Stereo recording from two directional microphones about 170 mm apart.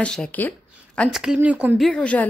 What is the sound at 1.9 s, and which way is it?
Speech, 5° left (ahead or behind).